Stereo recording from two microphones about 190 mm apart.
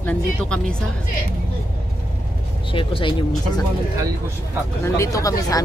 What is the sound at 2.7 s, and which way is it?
Speech, 25° left (ahead or behind).